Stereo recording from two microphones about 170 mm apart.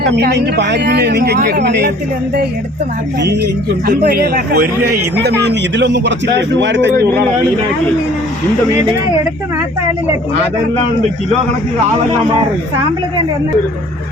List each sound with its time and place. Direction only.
0.2 s speech: 85° right
3.2 s speech: 70° right (ahead or behind)
5.4 s a man's voice: 85° right